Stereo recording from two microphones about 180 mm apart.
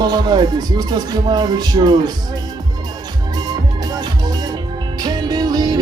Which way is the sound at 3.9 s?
20° right (ahead or behind).